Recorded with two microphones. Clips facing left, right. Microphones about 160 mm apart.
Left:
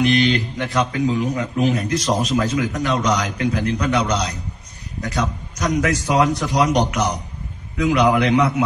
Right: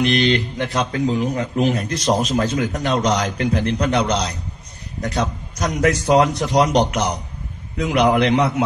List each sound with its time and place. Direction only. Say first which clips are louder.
0.3 s a man's voice: right 1 dB; 25° right (ahead or behind)
5.1 s a man's voice: even; 30° right (ahead or behind)